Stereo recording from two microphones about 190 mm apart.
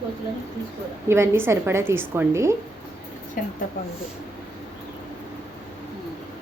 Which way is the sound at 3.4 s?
45° left (ahead or behind).